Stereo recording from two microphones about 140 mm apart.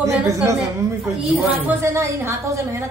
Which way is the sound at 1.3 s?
15° right (ahead or behind).